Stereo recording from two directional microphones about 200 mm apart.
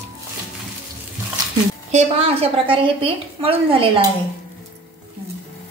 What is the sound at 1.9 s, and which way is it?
A woman's voice, 30° right (ahead or behind).